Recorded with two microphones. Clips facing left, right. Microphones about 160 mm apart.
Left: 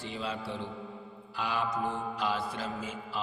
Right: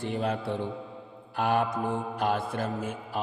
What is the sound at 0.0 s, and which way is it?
A man's voice, 55° right (ahead or behind).